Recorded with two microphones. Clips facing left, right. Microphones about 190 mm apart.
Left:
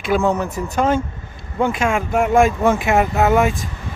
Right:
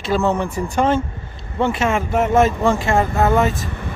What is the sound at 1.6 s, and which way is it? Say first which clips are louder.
Speech: even; 10° left (ahead or behind).